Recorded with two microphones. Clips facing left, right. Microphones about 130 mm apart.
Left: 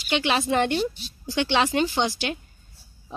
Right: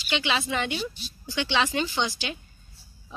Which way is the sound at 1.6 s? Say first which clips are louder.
Left 3 dB; 45° left (ahead or behind).